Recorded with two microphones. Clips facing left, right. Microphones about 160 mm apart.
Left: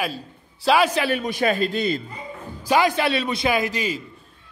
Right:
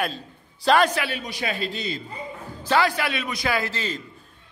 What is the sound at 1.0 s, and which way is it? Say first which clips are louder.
Speech: left 8 dB; 50° left (ahead or behind).